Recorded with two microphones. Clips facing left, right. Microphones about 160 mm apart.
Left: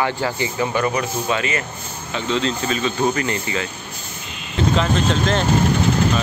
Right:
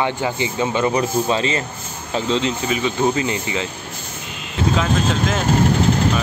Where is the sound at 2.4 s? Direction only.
15° right (ahead or behind).